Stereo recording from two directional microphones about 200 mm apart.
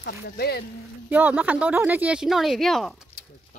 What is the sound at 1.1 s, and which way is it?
Speech, 10° right (ahead or behind).